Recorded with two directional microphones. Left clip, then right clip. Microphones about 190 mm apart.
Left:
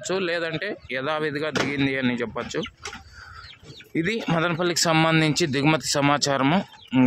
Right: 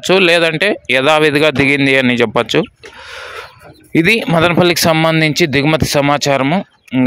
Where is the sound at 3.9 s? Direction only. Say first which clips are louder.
Right 13 dB; 45° right (ahead or behind).